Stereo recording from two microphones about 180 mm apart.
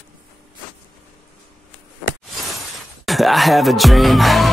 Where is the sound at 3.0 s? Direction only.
Centre (ahead or behind).